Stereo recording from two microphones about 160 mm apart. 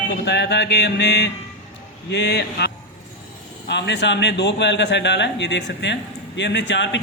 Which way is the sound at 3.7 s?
90° left.